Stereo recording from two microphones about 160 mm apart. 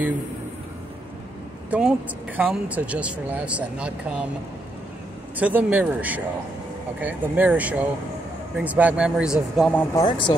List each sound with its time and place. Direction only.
1.7 s speech: 5° right (ahead or behind)
5.4 s speech: 10° right (ahead or behind)
9.9 s speech: 30° left (ahead or behind)